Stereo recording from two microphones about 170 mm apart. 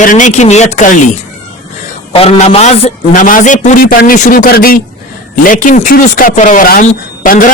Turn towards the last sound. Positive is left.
turn(degrees=50)  # may be behind; listen again after turning